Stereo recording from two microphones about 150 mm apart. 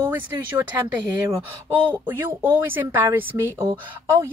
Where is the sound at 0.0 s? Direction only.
10° right (ahead or behind).